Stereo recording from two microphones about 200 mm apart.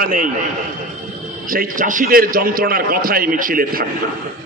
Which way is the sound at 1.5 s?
40° right (ahead or behind).